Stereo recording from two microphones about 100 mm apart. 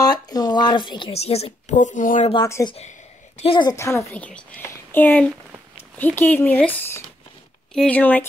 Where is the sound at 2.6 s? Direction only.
30° left (ahead or behind).